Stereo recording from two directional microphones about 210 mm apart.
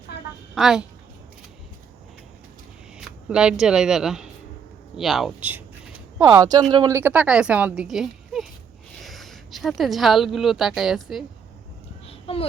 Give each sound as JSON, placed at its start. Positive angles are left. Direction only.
{"t": 0.5, "sound": "a woman's voice", "side_deg": -5}
{"t": 3.0, "sound": "a woman's voice", "side_deg": -5}
{"t": 12.0, "sound": "a sound", "side_deg": 25}